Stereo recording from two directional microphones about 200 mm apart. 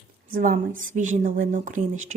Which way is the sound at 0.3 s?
45° right (ahead or behind).